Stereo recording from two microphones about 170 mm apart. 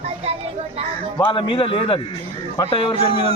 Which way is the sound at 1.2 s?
30° left (ahead or behind).